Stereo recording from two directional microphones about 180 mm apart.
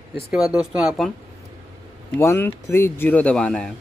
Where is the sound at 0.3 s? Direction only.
5° right (ahead or behind).